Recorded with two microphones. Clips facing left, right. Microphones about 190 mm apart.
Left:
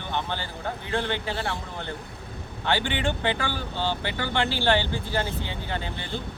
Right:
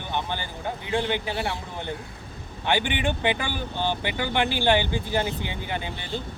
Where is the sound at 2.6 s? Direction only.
15° right (ahead or behind).